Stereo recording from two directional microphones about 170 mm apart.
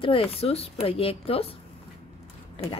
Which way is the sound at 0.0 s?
35° left (ahead or behind).